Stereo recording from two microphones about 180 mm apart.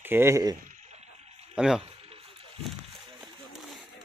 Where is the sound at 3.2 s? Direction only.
Centre (ahead or behind).